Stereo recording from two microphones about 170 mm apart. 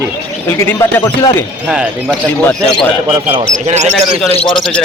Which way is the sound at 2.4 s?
5° left (ahead or behind).